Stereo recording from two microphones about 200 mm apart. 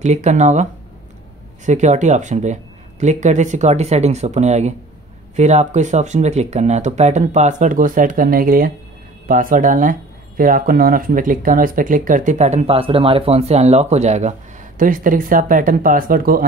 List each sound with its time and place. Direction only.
0.0 s speech: 35° right (ahead or behind)
1.7 s speech: 35° right (ahead or behind)